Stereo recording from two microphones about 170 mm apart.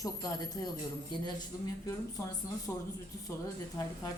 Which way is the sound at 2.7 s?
10° left (ahead or behind).